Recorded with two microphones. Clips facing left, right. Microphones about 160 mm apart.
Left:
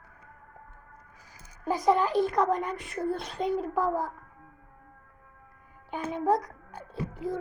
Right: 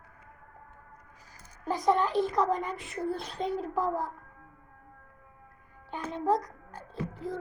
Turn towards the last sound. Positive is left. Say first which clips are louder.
# left 2 dB
turn(degrees=5)  # may be behind; listen again after turning